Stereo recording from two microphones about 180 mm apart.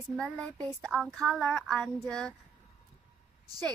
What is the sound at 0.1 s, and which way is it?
Speech, 5° left (ahead or behind).